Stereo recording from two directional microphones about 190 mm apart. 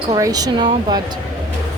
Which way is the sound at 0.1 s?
20° right (ahead or behind).